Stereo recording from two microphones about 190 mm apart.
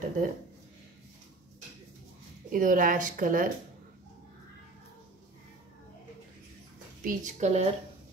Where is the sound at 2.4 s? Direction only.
45° right (ahead or behind).